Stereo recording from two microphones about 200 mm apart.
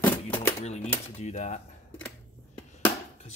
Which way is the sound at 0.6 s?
35° left (ahead or behind).